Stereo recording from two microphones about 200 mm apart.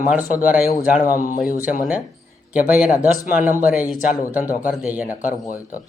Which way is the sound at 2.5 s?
5° right (ahead or behind).